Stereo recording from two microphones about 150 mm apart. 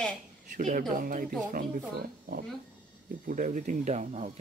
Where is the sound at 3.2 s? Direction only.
65° right (ahead or behind).